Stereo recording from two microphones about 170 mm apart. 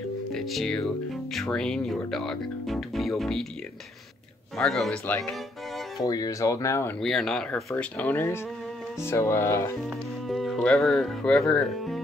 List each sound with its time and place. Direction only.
0.3 s speech: centre (ahead or behind)
4.6 s speech: centre (ahead or behind)
5.9 s speech: 20° left (ahead or behind)
7.0 s speech: centre (ahead or behind)
9.8 s speech: centre (ahead or behind)